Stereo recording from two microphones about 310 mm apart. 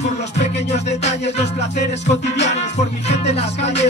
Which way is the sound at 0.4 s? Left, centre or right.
Left.